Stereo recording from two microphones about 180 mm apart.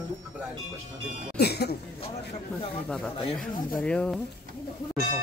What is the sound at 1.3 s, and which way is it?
Speech, 65° left (ahead or behind).